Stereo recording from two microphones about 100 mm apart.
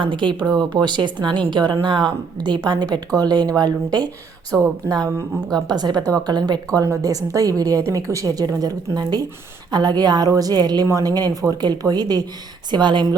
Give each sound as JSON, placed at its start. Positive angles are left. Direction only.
{"t": 0.0, "sound": "a woman's voice", "side_deg": -55}